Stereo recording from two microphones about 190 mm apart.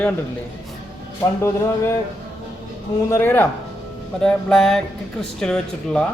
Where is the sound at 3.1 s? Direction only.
10° left (ahead or behind).